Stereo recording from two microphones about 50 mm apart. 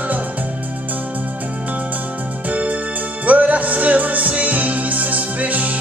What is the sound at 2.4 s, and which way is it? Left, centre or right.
Music, right.